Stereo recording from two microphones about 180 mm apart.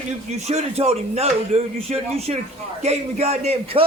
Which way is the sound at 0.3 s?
40° right (ahead or behind).